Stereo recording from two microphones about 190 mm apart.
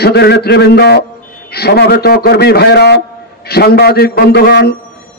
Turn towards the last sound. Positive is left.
turn(degrees=55)  # may be behind; listen again after turning